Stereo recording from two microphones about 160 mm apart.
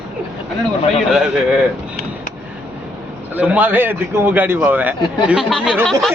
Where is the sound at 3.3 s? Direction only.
10° right (ahead or behind).